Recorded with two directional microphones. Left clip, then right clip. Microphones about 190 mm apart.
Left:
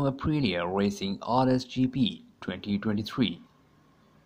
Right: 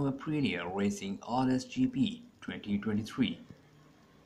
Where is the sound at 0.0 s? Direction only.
45° left (ahead or behind).